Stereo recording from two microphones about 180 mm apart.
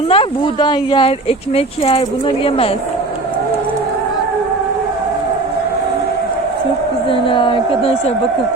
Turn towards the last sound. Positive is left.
turn(degrees=30)  # may be behind; listen again after turning